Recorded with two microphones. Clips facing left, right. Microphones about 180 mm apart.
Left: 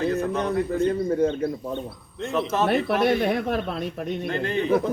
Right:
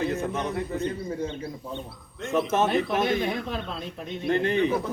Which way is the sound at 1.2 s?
55° left (ahead or behind).